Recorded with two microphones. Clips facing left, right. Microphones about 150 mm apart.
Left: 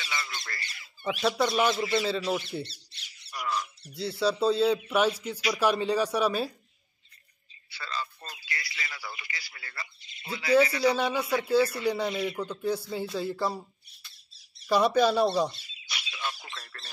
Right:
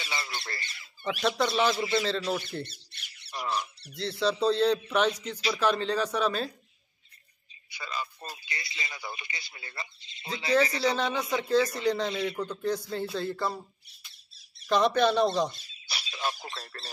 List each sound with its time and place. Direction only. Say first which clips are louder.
0.0 s speech: right 1 dB; 25° right (ahead or behind)
1.0 s speech: left 1 dB; centre (ahead or behind)
1.7 s speech: left 1 dB; 10° left (ahead or behind)
2.6 s squawk: even; 55° right (ahead or behind)
3.3 s squawk: even; 25° right (ahead or behind)
3.9 s speech: left 1 dB; 5° left (ahead or behind)
7.7 s speech: even; 15° right (ahead or behind); by 11.0 s 30° right (ahead or behind)
11.0 s speech: left 2 dB; 10° left (ahead or behind)
14.7 s speech: left 1 dB; 10° left (ahead or behind)
15.9 s speech: right 3 dB; 40° right (ahead or behind)